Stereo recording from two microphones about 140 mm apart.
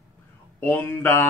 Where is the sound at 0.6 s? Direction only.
15° left (ahead or behind).